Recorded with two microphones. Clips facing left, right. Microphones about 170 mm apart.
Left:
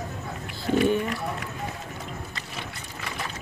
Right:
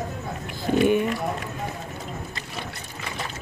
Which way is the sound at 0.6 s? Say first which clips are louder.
Right 2 dB; 15° right (ahead or behind).